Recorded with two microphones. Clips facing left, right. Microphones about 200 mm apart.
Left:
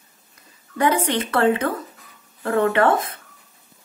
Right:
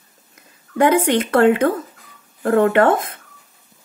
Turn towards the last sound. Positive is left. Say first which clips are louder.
# right 3 dB
turn(degrees=-50)  # may be behind; listen again after turning